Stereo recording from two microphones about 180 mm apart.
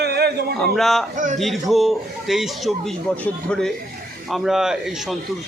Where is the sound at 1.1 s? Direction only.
45° right (ahead or behind).